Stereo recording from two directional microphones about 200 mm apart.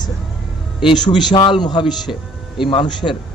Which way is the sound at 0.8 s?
20° left (ahead or behind).